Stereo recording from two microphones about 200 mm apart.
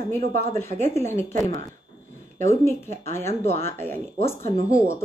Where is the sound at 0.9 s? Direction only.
15° left (ahead or behind).